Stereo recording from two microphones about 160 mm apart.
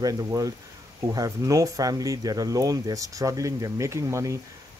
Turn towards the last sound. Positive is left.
turn(degrees=-20)  # may be behind; listen again after turning